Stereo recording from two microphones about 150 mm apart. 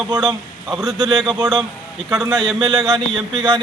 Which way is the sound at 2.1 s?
10° right (ahead or behind).